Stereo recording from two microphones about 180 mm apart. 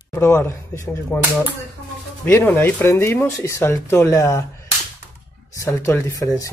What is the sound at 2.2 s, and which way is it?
Speech, 10° left (ahead or behind).